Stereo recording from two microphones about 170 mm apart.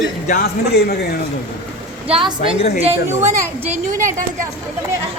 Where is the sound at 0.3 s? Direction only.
60° left (ahead or behind).